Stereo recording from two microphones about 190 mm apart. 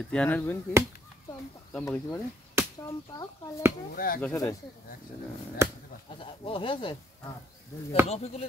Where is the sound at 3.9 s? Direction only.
50° left (ahead or behind).